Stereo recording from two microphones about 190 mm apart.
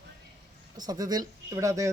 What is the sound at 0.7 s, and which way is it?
A woman's voice, 20° right (ahead or behind).